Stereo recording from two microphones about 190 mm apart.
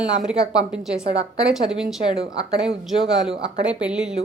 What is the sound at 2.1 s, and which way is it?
Speech, 35° right (ahead or behind).